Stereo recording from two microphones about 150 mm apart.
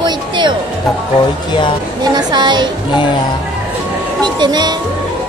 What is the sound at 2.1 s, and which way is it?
Speech, 30° right (ahead or behind).